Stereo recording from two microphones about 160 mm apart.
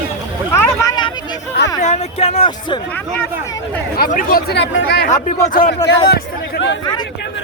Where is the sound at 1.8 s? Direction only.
45° left (ahead or behind).